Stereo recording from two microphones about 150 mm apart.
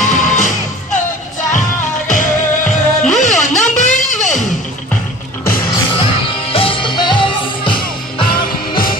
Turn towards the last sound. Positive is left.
turn(degrees=35)  # may be behind; listen again after turning